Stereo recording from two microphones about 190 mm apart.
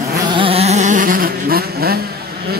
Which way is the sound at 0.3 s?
30° right (ahead or behind).